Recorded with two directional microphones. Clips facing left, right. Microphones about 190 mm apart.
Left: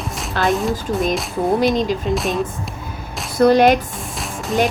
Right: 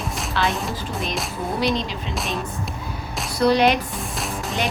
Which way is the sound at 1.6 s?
45° left (ahead or behind).